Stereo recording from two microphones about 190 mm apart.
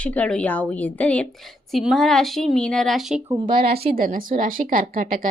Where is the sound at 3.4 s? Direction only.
50° right (ahead or behind).